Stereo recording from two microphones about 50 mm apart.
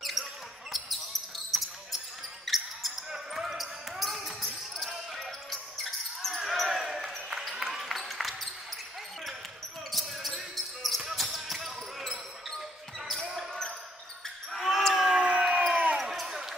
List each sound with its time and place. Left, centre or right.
0.0 s basketball bounce: centre
9.8 s basketball bounce: centre
14.5 s basketball bounce: centre
15.0 s crowd: centre
15.7 s basketball bounce: right
16.0 s basketball bounce: centre